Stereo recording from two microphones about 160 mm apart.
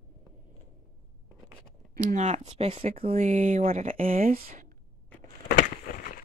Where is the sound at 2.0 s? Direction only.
50° right (ahead or behind).